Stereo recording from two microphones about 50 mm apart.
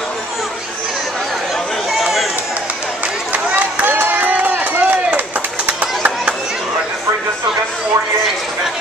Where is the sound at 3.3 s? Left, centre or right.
Right.